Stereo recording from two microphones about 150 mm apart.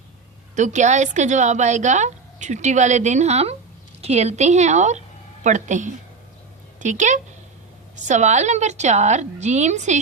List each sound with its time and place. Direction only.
0.5 s a woman's voice: 55° right (ahead or behind)